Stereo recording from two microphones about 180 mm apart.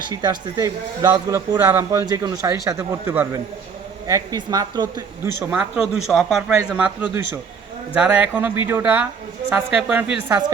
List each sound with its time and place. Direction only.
0.1 s a man's voice: 20° right (ahead or behind)
5.4 s a man's voice: 5° right (ahead or behind)